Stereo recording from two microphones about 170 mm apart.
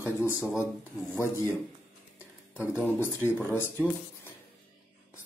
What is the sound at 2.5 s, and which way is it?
Speech, 10° left (ahead or behind).